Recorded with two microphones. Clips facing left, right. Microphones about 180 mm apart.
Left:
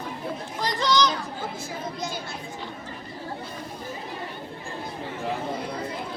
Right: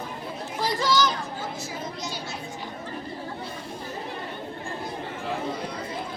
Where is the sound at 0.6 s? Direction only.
5° right (ahead or behind).